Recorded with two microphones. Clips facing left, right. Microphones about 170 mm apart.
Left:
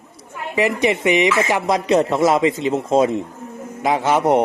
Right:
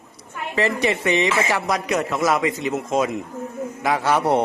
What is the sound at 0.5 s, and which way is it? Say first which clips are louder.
A man's voice: left 3 dB; 15° left (ahead or behind).